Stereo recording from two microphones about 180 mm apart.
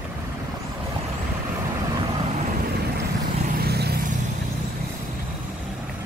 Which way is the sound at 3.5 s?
60° right (ahead or behind).